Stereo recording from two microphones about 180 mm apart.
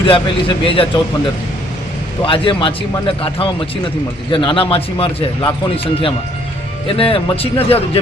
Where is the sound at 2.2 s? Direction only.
30° left (ahead or behind).